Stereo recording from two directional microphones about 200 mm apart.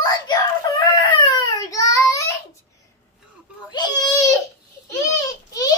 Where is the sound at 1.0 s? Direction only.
20° left (ahead or behind).